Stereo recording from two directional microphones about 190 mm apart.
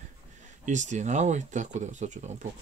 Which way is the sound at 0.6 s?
40° right (ahead or behind).